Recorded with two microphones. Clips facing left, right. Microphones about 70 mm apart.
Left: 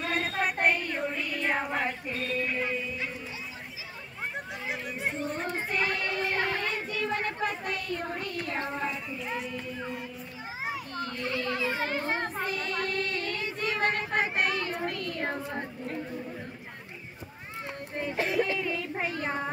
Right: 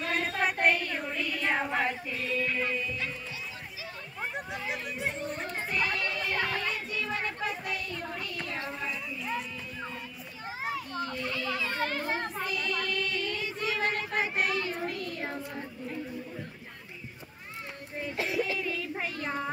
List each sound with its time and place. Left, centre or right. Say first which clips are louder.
0.1 s a sound: even; centre
2.0 s speech: left 1 dB; left
2.4 s music: even; centre
4.5 s speech: even; centre
5.7 s children playing: right 1 dB; left
7.4 s a sound: left 2 dB; left
8.5 s speech: left 5 dB; left
11.6 s a child's voice: left 2 dB; centre
12.0 s child singing: left 2 dB; left
14.7 s a child's voice: left 2 dB; left
18.0 s music: left 3 dB; left
18.7 s speech: left 2 dB; left